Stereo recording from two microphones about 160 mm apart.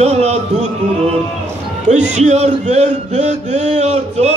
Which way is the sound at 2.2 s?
45° right (ahead or behind).